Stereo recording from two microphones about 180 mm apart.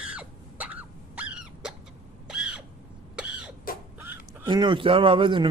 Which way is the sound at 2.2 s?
5° right (ahead or behind).